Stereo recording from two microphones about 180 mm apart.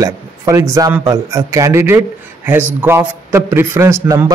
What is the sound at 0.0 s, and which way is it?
Speech, 15° right (ahead or behind).